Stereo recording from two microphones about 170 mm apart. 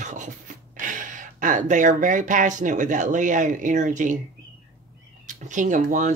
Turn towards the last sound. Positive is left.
turn(degrees=-50)  # may be behind; listen again after turning